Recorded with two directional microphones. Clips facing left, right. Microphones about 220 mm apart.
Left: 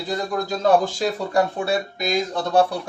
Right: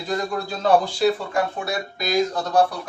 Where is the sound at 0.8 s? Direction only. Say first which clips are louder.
Right 3 dB; 40° left (ahead or behind).